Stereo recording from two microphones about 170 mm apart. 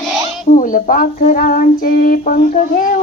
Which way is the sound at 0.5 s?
50° left (ahead or behind).